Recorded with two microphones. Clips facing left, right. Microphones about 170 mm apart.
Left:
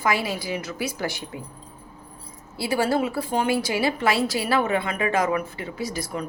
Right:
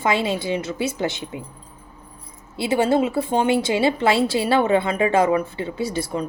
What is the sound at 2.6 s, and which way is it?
A woman's voice, 20° right (ahead or behind).